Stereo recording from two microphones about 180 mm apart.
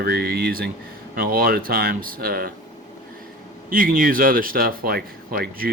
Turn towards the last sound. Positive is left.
turn(degrees=-55)  # may be behind; listen again after turning